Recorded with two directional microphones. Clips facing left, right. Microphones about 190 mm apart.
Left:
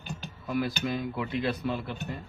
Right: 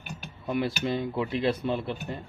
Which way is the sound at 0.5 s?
25° right (ahead or behind).